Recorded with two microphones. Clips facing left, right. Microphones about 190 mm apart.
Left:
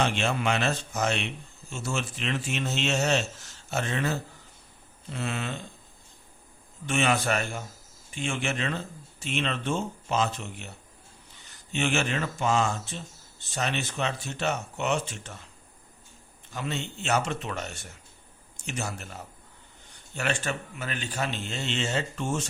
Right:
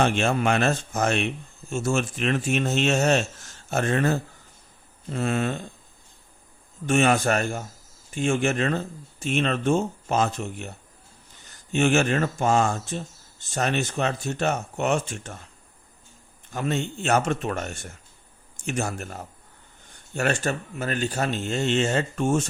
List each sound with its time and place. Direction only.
0.0 s speech: 50° right (ahead or behind)
6.8 s speech: 45° right (ahead or behind)
16.5 s speech: 50° right (ahead or behind)